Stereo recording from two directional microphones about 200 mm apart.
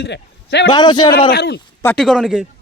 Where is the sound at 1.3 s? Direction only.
55° left (ahead or behind).